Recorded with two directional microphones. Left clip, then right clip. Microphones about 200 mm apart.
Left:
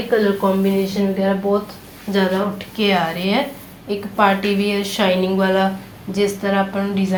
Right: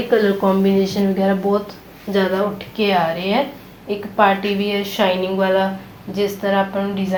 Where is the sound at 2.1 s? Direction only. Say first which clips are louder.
Right 1 dB; 20° left (ahead or behind).